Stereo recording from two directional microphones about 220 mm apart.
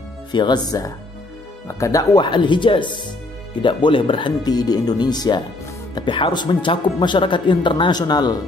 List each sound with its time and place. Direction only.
0.3 s speech: 20° left (ahead or behind)